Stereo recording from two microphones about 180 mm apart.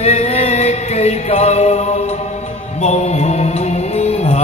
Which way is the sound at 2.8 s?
40° left (ahead or behind).